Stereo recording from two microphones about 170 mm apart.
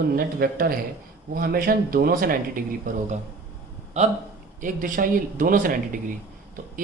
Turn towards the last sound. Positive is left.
turn(degrees=-55)  # may be behind; listen again after turning